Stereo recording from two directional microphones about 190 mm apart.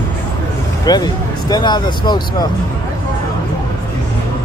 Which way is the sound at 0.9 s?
20° left (ahead or behind).